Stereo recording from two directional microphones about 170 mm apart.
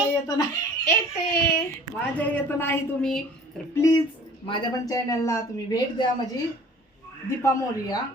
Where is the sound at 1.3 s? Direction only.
70° left (ahead or behind).